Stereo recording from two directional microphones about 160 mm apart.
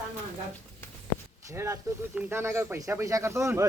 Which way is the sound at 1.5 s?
20° right (ahead or behind).